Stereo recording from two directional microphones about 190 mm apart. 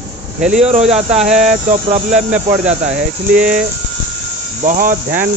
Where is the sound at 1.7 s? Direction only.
35° right (ahead or behind).